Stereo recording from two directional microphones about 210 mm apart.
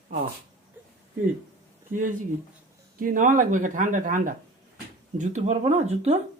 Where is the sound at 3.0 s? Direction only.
40° right (ahead or behind).